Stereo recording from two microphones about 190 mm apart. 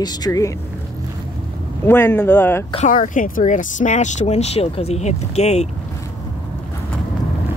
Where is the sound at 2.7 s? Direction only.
40° left (ahead or behind).